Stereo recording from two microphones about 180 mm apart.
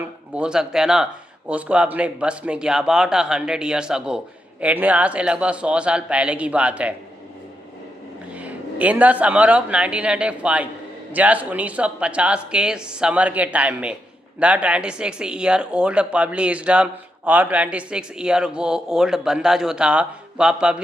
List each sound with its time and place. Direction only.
0.0 s speech: 5° right (ahead or behind)
8.3 s speech: 10° right (ahead or behind)